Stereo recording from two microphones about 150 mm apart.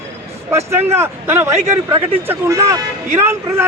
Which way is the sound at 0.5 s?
15° right (ahead or behind).